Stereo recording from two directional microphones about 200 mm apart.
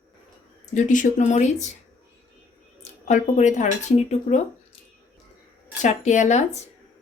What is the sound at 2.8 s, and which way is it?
Speech, 35° left (ahead or behind).